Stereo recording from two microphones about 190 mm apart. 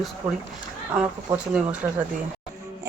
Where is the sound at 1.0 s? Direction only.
5° right (ahead or behind).